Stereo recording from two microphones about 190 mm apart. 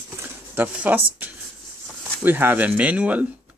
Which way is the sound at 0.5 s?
10° right (ahead or behind).